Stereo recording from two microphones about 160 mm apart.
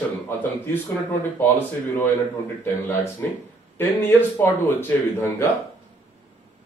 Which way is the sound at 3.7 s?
15° left (ahead or behind).